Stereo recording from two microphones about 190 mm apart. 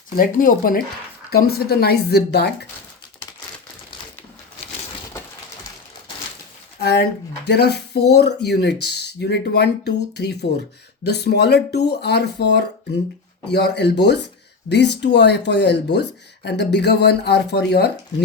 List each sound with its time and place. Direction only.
0.2 s speech: 50° left (ahead or behind)
6.7 s speech: 60° left (ahead or behind)